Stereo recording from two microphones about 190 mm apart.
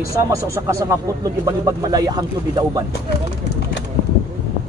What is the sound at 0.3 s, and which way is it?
Speech, 15° right (ahead or behind).